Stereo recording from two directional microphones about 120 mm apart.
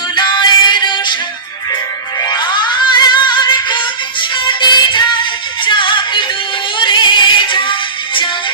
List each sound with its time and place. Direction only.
0.2 s music: 35° left (ahead or behind)
2.2 s music: 35° left (ahead or behind)